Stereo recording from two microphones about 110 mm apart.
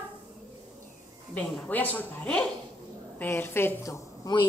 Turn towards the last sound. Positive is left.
turn(degrees=25)  # may be behind; listen again after turning